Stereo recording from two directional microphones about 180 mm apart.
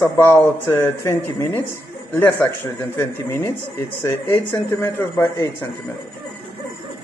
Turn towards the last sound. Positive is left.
turn(degrees=15)  # may be behind; listen again after turning